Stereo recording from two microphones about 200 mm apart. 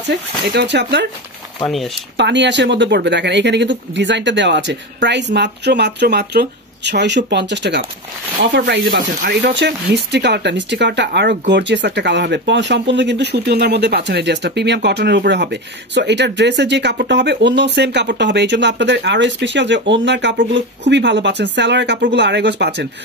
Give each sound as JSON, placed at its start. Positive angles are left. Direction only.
{"t": 0.0, "sound": "speech", "side_deg": -60}
{"t": 2.1, "sound": "speech", "side_deg": -60}